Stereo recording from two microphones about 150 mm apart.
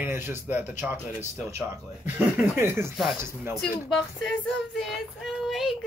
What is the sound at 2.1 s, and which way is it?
Speech, 15° right (ahead or behind).